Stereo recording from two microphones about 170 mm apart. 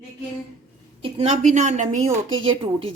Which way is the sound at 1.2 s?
45° right (ahead or behind).